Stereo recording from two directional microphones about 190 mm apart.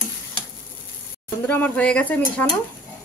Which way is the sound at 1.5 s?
5° left (ahead or behind).